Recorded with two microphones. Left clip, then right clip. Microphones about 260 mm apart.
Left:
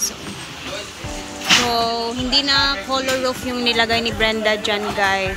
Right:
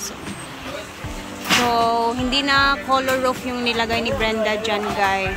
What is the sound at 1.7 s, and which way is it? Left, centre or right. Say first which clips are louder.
Music: right 2 dB; centre.